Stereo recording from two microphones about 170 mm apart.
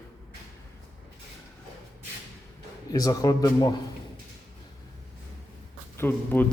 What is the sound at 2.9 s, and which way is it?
Speech, 20° left (ahead or behind).